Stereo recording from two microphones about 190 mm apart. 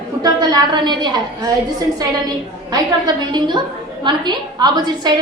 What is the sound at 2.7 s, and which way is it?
A woman's voice, 20° right (ahead or behind).